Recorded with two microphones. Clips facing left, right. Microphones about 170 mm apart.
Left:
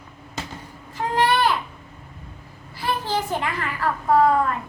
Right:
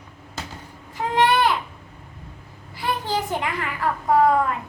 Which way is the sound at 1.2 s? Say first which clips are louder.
Right 1 dB; 20° right (ahead or behind).